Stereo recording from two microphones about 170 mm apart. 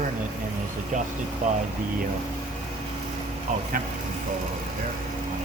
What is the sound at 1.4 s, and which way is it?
Speech, 45° right (ahead or behind).